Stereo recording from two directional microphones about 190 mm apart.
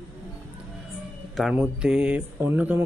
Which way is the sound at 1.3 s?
Centre (ahead or behind).